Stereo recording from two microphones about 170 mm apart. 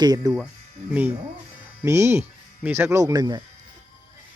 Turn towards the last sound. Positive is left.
turn(degrees=-20)  # may be behind; listen again after turning